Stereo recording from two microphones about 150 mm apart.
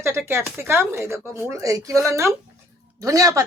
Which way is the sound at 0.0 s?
15° right (ahead or behind).